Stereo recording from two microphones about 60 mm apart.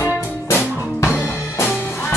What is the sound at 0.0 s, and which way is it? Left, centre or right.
Music, left.